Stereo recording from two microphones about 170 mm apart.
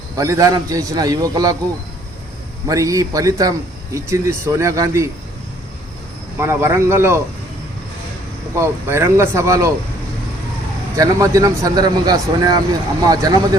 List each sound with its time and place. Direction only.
0.2 s speech: 20° right (ahead or behind)
2.6 s speech: 20° right (ahead or behind)
6.4 s speech: 15° right (ahead or behind)
8.5 s speech: 15° right (ahead or behind)
10.9 s speech: 20° right (ahead or behind)